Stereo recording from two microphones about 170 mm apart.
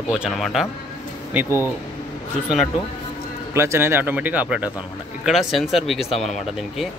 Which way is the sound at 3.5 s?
15° right (ahead or behind).